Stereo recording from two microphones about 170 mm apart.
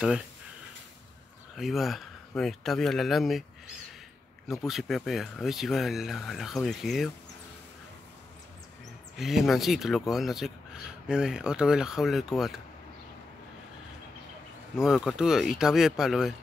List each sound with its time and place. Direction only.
1.6 s speech: centre (ahead or behind)
4.5 s speech: centre (ahead or behind)
9.1 s speech: centre (ahead or behind)
14.8 s speech: 5° right (ahead or behind)